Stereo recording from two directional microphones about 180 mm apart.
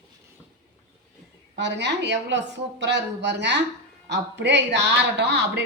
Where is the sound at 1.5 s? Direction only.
75° right (ahead or behind).